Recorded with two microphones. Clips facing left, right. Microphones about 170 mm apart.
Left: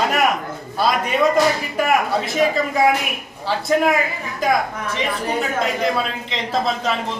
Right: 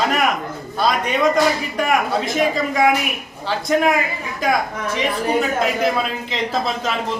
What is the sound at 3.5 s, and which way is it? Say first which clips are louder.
Speech: even; centre (ahead or behind).